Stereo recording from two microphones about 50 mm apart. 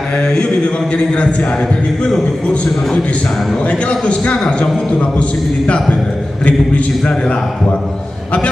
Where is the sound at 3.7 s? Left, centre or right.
Left.